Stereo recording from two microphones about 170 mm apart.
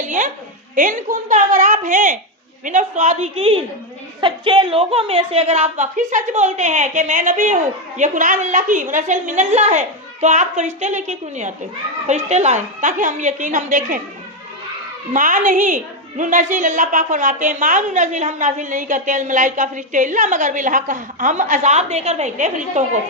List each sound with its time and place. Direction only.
0.0 s a sound: 45° right (ahead or behind)
0.8 s a woman's voice: 45° right (ahead or behind)
15.1 s a woman's voice: 50° right (ahead or behind)